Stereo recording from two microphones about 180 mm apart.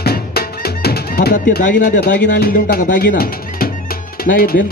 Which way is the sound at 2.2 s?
55° left (ahead or behind).